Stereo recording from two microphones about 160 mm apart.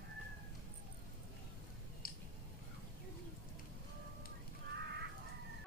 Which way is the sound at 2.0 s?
65° left (ahead or behind).